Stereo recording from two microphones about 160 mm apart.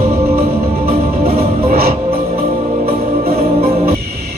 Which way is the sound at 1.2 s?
70° right (ahead or behind).